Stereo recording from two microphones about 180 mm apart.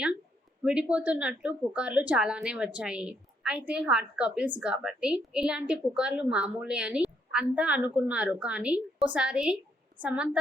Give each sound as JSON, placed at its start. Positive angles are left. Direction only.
{"t": 0.6, "sound": "a woman's voice", "side_deg": -5}